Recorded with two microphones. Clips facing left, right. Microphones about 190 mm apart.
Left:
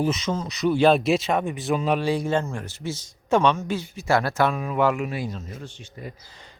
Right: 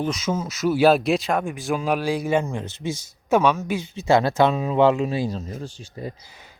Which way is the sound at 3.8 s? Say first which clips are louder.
Right 4 dB; 20° right (ahead or behind).